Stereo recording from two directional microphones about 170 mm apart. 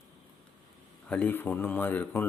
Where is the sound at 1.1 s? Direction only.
10° left (ahead or behind).